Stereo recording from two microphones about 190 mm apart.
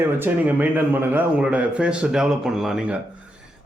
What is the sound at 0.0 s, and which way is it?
A man's voice, 10° right (ahead or behind).